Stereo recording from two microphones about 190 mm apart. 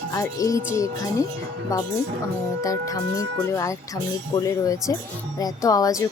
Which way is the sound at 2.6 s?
15° left (ahead or behind).